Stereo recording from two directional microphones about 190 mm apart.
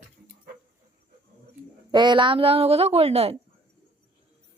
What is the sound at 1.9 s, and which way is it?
A woman's voice, 25° right (ahead or behind).